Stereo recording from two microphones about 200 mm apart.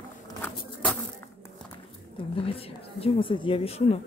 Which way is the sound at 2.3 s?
30° left (ahead or behind).